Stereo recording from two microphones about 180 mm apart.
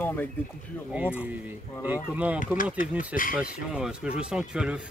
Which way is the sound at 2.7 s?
50° left (ahead or behind).